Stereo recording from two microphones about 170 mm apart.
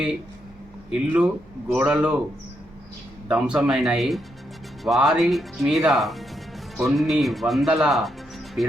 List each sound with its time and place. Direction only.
0.9 s speech: 5° right (ahead or behind)
3.2 s speech: 5° right (ahead or behind)